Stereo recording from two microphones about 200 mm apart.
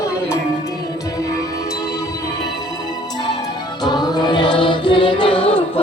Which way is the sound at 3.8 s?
20° left (ahead or behind).